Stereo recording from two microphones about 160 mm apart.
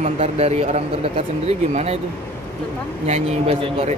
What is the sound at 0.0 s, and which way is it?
Speech, 40° right (ahead or behind).